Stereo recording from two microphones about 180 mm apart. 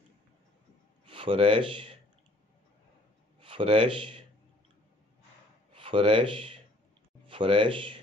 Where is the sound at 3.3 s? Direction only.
30° right (ahead or behind).